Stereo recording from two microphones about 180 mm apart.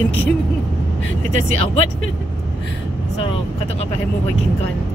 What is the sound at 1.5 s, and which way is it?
Speech, 35° left (ahead or behind).